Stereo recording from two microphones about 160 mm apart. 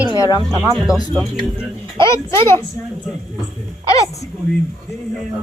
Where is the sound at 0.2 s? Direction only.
25° left (ahead or behind).